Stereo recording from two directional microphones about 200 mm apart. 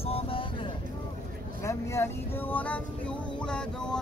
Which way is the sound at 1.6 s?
15° left (ahead or behind).